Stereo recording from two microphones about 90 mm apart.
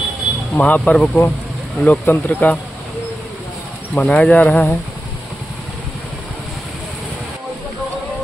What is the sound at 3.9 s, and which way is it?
Speech, 10° left (ahead or behind).